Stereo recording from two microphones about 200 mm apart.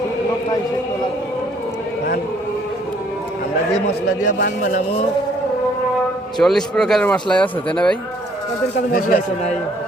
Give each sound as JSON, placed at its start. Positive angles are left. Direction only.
{"t": 4.4, "sound": "speech", "side_deg": 40}
{"t": 6.4, "sound": "speech", "side_deg": 5}
{"t": 8.9, "sound": "speech", "side_deg": 45}